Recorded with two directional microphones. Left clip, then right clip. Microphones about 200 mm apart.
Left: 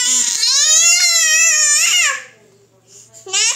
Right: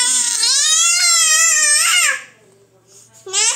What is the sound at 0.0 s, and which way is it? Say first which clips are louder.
Crying: left 1 dB; 10° left (ahead or behind).